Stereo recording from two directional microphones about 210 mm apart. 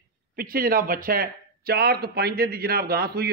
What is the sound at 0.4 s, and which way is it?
Speech, 45° right (ahead or behind).